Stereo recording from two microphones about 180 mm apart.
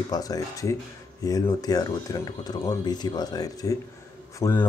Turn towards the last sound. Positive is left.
turn(degrees=15)  # may be behind; listen again after turning